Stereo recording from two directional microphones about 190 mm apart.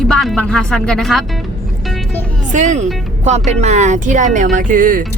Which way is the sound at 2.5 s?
40° right (ahead or behind).